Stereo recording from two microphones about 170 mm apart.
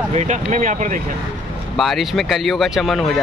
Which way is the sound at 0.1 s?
45° right (ahead or behind).